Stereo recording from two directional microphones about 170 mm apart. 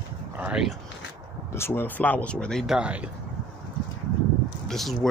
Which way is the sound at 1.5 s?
15° left (ahead or behind).